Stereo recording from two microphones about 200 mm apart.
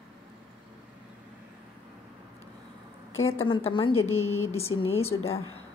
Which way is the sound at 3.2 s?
90° left.